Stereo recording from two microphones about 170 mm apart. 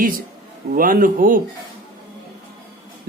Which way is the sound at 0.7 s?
55° right (ahead or behind).